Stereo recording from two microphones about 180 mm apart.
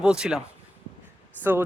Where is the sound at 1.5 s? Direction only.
15° right (ahead or behind).